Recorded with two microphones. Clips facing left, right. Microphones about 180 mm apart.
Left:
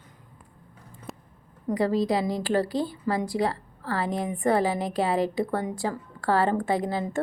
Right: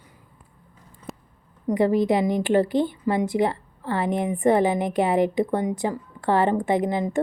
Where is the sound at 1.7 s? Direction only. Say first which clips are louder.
Right 4 dB; 20° right (ahead or behind).